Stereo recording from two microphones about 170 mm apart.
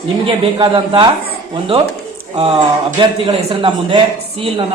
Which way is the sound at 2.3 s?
35° right (ahead or behind).